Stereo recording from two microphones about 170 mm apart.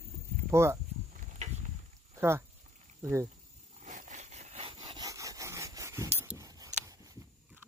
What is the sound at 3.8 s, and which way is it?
Rub, 45° right (ahead or behind).